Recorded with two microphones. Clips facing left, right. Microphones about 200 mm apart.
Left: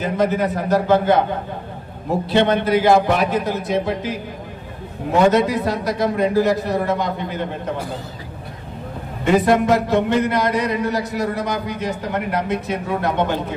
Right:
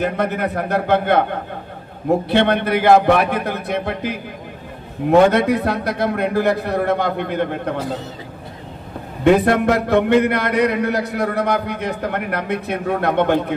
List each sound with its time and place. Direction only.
0.0 s a man's voice: 60° right (ahead or behind)
2.2 s a man's voice: 60° right (ahead or behind)
9.2 s a man's voice: 60° right (ahead or behind)